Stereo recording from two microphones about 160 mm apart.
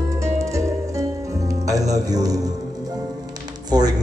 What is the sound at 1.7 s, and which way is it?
Speech, 20° right (ahead or behind).